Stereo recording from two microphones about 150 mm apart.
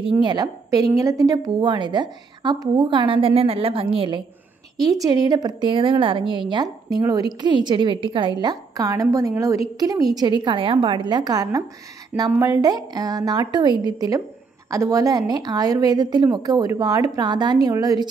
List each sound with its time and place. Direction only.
0.2 s a woman's voice: 30° right (ahead or behind)
4.7 s a woman's voice: 25° right (ahead or behind)